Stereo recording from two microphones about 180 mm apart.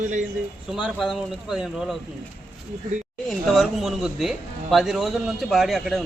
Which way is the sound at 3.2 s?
Centre (ahead or behind).